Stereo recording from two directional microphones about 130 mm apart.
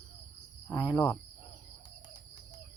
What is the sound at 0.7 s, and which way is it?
Speech, 30° left (ahead or behind).